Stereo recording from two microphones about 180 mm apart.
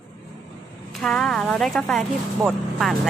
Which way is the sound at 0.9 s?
Centre (ahead or behind).